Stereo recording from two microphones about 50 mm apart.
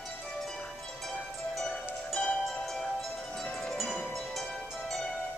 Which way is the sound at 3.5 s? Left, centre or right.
Centre.